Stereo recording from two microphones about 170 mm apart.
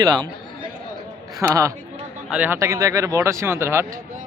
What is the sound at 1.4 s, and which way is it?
Speech, 20° right (ahead or behind).